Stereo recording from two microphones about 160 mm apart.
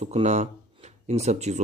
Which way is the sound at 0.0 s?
40° right (ahead or behind).